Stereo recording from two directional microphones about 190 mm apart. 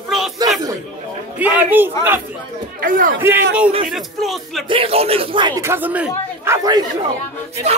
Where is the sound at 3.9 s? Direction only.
Centre (ahead or behind).